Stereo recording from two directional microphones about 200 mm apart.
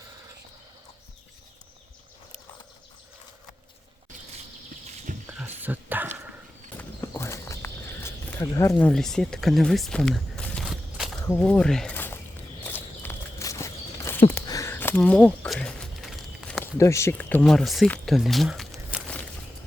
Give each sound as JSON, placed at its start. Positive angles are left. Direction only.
{"t": 5.1, "sound": "a sound", "side_deg": -40}
{"t": 5.6, "sound": "dog", "side_deg": -10}
{"t": 6.7, "sound": "walk", "side_deg": 15}
{"t": 8.9, "sound": "speech", "side_deg": 5}
{"t": 12.6, "sound": "walk", "side_deg": 10}
{"t": 14.3, "sound": "a sound", "side_deg": 15}
{"t": 16.7, "sound": "speech", "side_deg": 15}